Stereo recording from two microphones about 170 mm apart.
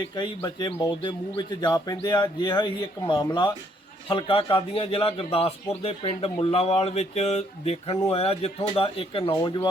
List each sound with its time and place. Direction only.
0.2 s a man's voice: 25° left (ahead or behind)
9.3 s speech: 20° left (ahead or behind)